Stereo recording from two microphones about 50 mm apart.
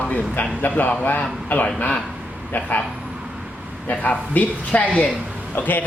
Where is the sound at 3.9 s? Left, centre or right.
Left.